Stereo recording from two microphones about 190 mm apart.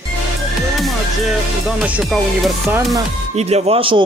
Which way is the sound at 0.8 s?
Centre (ahead or behind).